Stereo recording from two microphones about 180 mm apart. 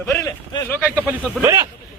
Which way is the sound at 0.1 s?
15° left (ahead or behind).